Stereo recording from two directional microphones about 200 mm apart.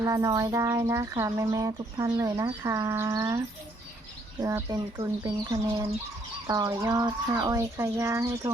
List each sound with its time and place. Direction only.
0.0 s speech: 15° right (ahead or behind)